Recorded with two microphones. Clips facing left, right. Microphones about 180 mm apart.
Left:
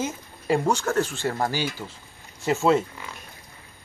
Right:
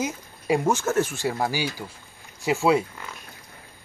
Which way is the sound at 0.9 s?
20° right (ahead or behind).